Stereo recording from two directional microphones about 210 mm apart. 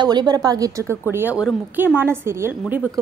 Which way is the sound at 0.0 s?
20° right (ahead or behind).